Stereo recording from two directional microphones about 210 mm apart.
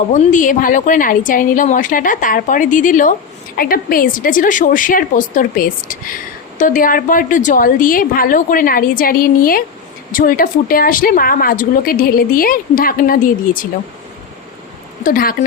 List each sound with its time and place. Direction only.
0.1 s a woman's voice: 40° left (ahead or behind)
15.0 s a woman's voice: 40° left (ahead or behind)